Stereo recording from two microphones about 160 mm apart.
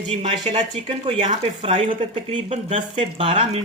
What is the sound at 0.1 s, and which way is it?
Speech, 40° right (ahead or behind).